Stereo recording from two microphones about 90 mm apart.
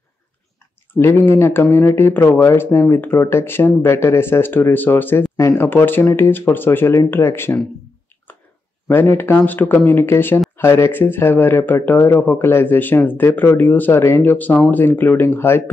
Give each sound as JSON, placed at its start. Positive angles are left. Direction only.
{"t": 0.9, "sound": "speech", "side_deg": 25}
{"t": 8.8, "sound": "speech", "side_deg": 25}